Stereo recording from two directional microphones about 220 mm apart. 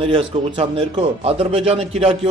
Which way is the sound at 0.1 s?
25° right (ahead or behind).